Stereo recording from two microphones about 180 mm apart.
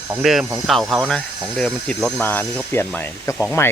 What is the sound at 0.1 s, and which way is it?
Speech, centre (ahead or behind).